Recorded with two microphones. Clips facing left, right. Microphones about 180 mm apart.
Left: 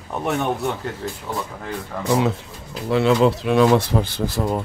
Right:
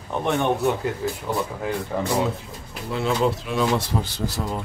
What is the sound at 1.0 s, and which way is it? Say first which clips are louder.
Speech: right 2 dB; 10° right (ahead or behind).